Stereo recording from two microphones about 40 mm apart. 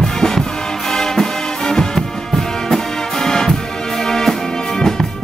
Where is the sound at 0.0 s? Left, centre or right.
Centre.